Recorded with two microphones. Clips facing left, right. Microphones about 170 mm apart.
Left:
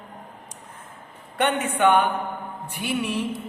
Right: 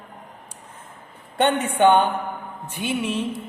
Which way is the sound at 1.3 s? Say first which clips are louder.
Right 3 dB; 25° right (ahead or behind).